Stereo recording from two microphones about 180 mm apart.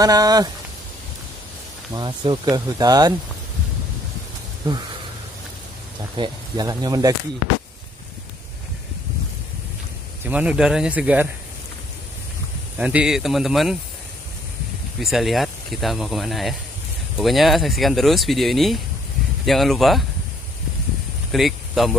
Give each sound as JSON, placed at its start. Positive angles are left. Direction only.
{"t": 0.0, "sound": "speech", "side_deg": -20}
{"t": 2.0, "sound": "speech", "side_deg": -25}
{"t": 6.1, "sound": "speech", "side_deg": -25}
{"t": 10.2, "sound": "speech", "side_deg": -5}
{"t": 12.7, "sound": "speech", "side_deg": -5}
{"t": 15.0, "sound": "speech", "side_deg": 0}
{"t": 21.3, "sound": "speech", "side_deg": 0}